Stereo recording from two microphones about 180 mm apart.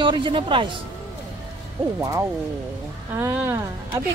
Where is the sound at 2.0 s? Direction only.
20° right (ahead or behind).